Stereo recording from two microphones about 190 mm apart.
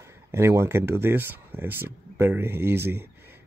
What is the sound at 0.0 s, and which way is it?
Speech, 15° right (ahead or behind).